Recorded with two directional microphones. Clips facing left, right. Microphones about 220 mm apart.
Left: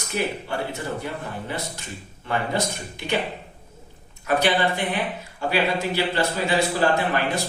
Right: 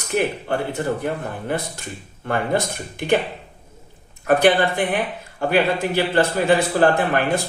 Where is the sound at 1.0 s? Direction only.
50° right (ahead or behind).